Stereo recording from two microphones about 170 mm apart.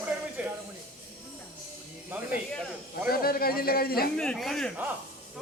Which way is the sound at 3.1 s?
60° left (ahead or behind).